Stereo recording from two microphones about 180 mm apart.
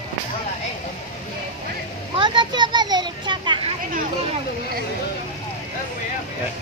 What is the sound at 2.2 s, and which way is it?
Children playing, 25° right (ahead or behind).